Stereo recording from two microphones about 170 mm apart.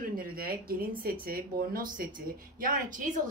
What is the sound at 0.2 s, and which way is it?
A woman's voice, 60° right (ahead or behind).